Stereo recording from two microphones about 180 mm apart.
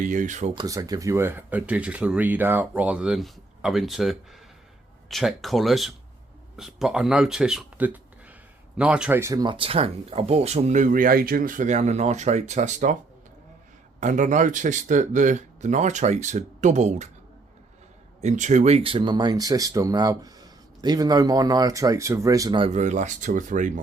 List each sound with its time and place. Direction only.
0.0 s speech: 45° right (ahead or behind)
0.5 s speech: 20° right (ahead or behind); by 13.0 s 45° right (ahead or behind)
14.0 s speech: 45° right (ahead or behind)
18.2 s speech: 40° right (ahead or behind); by 22.7 s 25° right (ahead or behind)
22.7 s speech: 40° right (ahead or behind)